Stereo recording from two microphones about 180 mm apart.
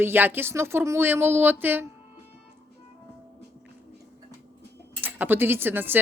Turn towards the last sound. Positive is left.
turn(degrees=-10)  # may be behind; listen again after turning